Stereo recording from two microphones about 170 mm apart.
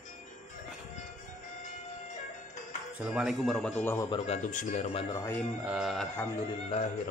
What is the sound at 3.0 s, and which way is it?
Speech, 5° right (ahead or behind).